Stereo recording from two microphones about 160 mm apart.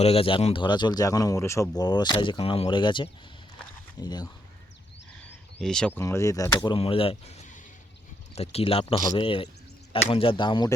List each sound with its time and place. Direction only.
0.0 s speech: 35° left (ahead or behind)
5.2 s a sound: 5° left (ahead or behind)
6.0 s speech: 20° left (ahead or behind)
6.7 s speech: 35° left (ahead or behind)